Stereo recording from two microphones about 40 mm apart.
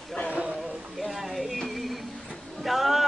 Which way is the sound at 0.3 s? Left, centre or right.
Right.